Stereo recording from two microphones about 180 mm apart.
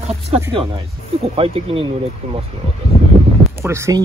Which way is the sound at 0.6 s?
30° right (ahead or behind).